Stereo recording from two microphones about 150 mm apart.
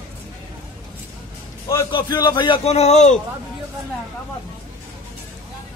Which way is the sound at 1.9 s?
30° left (ahead or behind).